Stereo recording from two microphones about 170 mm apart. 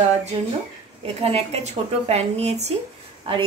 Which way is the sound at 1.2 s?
40° right (ahead or behind).